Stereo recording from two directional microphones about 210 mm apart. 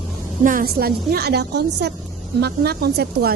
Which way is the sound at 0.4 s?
45° right (ahead or behind).